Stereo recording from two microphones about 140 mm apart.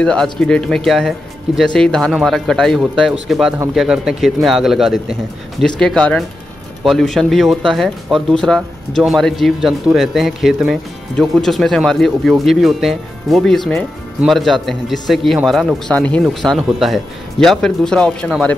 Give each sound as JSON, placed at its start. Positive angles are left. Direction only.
{"t": 0.0, "sound": "speech", "side_deg": 5}